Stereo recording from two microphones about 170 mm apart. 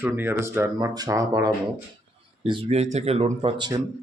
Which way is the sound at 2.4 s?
35° right (ahead or behind).